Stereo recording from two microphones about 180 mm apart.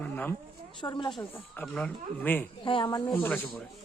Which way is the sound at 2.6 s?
25° left (ahead or behind).